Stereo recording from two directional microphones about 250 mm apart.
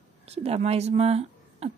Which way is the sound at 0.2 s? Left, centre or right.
Right.